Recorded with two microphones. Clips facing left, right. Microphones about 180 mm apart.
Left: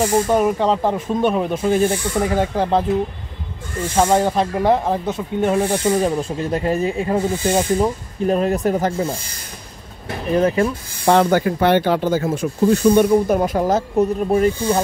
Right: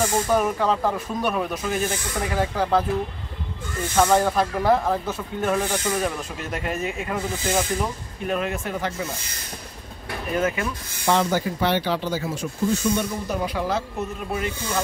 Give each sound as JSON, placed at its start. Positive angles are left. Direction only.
{"t": 0.0, "sound": "speech", "side_deg": 25}
{"t": 3.9, "sound": "speech", "side_deg": 30}
{"t": 10.3, "sound": "speech", "side_deg": 35}
{"t": 11.1, "sound": "speech", "side_deg": 60}